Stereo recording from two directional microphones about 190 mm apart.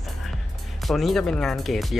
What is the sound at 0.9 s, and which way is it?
Speech, centre (ahead or behind).